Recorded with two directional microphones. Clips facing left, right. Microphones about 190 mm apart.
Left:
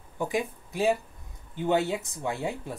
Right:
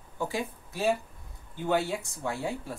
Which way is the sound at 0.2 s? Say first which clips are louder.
Left 3 dB; 15° left (ahead or behind).